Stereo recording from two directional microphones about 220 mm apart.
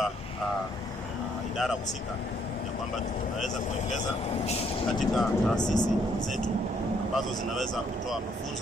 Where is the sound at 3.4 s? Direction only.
35° left (ahead or behind).